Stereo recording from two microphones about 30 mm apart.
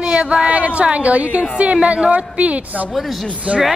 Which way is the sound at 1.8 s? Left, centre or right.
Right.